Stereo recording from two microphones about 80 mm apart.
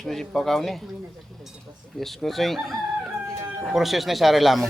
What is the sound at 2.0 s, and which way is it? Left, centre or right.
Speech, centre.